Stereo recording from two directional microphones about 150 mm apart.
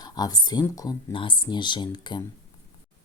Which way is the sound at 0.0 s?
25° left (ahead or behind).